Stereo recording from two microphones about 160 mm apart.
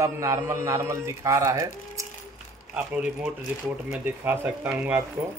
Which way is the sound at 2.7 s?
5° right (ahead or behind).